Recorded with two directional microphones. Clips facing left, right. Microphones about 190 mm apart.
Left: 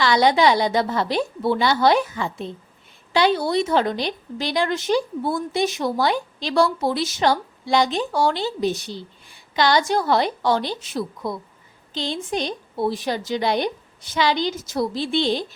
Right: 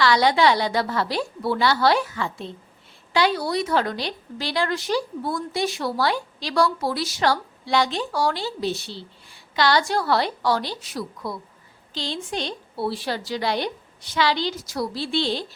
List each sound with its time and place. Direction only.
0.0 s a woman's voice: 20° left (ahead or behind)